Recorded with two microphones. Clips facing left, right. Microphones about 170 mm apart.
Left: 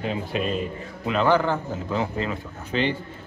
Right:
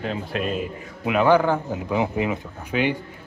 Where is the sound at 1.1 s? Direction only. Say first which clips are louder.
Right 3 dB; 15° right (ahead or behind).